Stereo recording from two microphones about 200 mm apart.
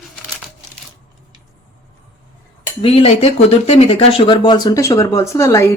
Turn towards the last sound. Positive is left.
turn(degrees=15)  # may be behind; listen again after turning